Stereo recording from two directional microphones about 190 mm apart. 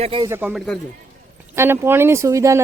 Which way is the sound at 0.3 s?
10° right (ahead or behind).